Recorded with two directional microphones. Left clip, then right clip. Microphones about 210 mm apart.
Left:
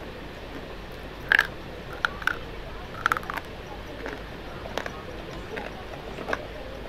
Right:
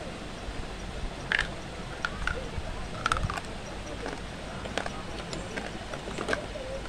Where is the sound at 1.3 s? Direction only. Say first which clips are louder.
Left 8 dB; 20° left (ahead or behind).